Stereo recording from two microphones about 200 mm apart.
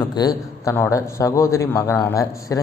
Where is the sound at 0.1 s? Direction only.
20° left (ahead or behind).